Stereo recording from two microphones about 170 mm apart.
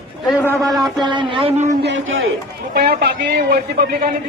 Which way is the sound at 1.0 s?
30° right (ahead or behind).